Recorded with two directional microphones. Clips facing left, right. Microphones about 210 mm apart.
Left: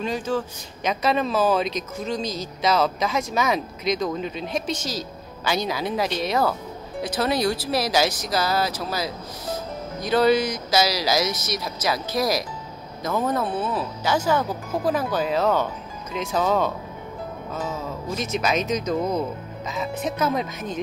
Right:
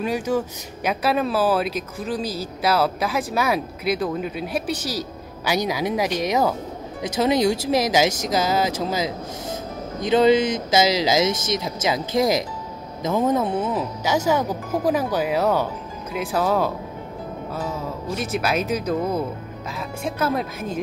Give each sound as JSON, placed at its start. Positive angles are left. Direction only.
{"t": 0.0, "sound": "speech", "side_deg": -10}
{"t": 18.4, "sound": "speech", "side_deg": -5}